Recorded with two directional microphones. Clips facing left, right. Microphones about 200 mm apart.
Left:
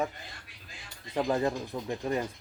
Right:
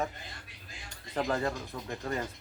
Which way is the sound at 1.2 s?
15° left (ahead or behind).